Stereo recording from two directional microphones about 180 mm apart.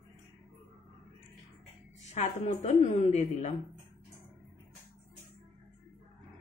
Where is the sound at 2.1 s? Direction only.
40° left (ahead or behind).